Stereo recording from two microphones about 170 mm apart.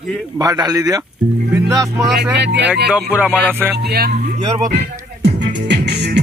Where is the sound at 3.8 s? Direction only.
70° right (ahead or behind).